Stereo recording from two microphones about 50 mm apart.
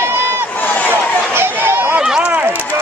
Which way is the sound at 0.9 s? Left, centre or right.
Right.